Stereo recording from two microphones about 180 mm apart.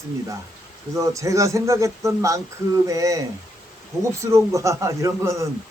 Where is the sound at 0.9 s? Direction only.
15° right (ahead or behind).